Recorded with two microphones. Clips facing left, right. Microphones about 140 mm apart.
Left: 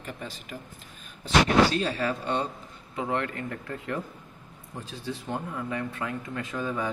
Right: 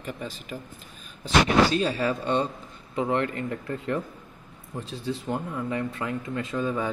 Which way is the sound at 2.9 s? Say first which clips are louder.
Right 4 dB; 25° right (ahead or behind).